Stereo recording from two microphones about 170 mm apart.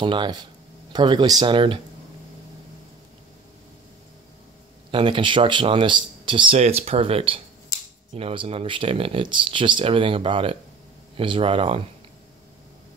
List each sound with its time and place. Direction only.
0.0 s speech: 30° right (ahead or behind)
4.9 s speech: 30° right (ahead or behind)